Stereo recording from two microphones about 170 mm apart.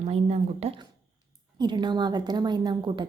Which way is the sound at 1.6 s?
25° right (ahead or behind).